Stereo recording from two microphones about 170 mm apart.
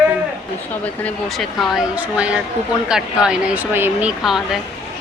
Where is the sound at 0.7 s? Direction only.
10° left (ahead or behind).